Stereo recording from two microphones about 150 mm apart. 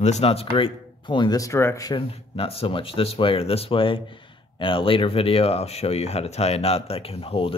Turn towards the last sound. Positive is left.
turn(degrees=35)  # may be behind; listen again after turning